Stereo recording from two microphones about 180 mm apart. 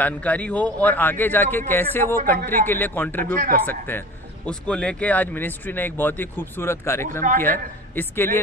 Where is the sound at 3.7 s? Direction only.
10° left (ahead or behind).